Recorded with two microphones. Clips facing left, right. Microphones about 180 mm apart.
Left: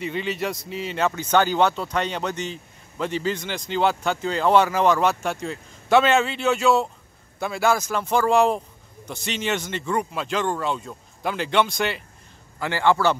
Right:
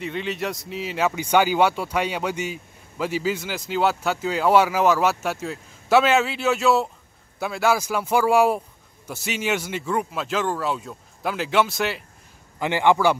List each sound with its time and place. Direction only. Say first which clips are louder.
0.0 s speech: left 1 dB; centre (ahead or behind)
12.5 s a man's voice: right 2 dB; 20° right (ahead or behind)